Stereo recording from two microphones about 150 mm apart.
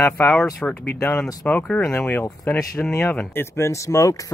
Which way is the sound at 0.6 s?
10° left (ahead or behind).